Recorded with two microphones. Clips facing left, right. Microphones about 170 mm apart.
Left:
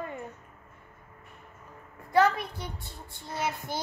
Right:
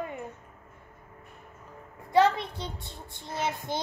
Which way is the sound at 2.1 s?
20° right (ahead or behind).